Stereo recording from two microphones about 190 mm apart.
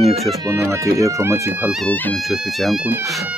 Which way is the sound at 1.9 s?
5° left (ahead or behind).